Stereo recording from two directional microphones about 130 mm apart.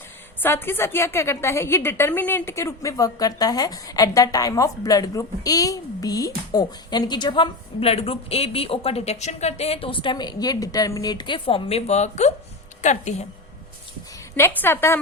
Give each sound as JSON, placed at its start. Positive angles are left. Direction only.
{"t": 0.3, "sound": "a woman's voice", "side_deg": 15}
{"t": 14.3, "sound": "a woman's voice", "side_deg": 15}